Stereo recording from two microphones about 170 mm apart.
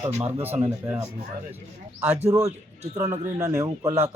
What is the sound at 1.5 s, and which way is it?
Speech, 10° right (ahead or behind).